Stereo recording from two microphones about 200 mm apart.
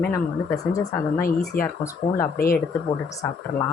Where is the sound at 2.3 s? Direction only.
45° left (ahead or behind).